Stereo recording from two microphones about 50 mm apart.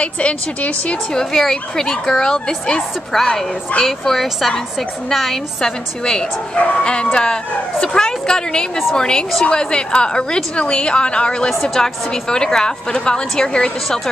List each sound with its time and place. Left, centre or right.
0.0 s a woman's voice: left
1.1 s a woman's voice: centre
6.5 s a woman's voice: left